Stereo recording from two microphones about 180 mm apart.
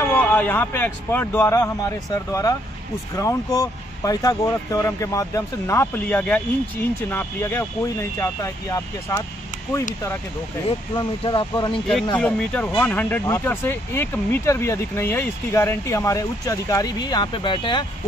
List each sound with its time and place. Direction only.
0.0 s speech: 10° left (ahead or behind)
11.0 s speech: 25° left (ahead or behind)
12.2 s speech: 5° left (ahead or behind); by 17.8 s 25° left (ahead or behind)